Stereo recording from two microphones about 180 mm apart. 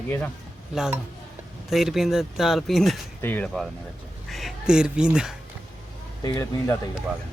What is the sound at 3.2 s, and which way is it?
Speech, 10° left (ahead or behind).